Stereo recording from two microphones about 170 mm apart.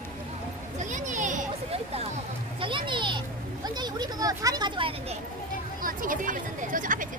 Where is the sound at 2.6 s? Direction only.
30° right (ahead or behind).